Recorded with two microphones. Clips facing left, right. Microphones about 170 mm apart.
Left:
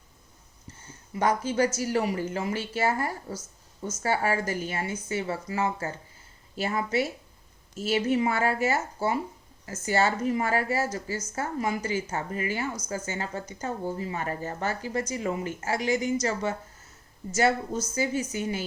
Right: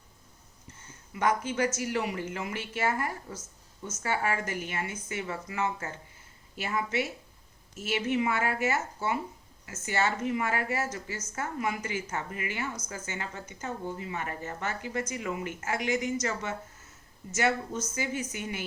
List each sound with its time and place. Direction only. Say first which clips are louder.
0.9 s speech: left 2 dB; 35° left (ahead or behind)